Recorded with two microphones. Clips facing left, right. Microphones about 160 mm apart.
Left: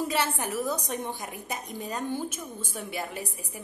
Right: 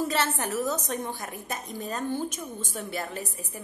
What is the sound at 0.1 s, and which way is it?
A woman's voice, 10° left (ahead or behind).